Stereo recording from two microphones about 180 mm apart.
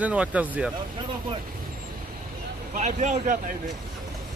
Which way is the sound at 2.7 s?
40° right (ahead or behind).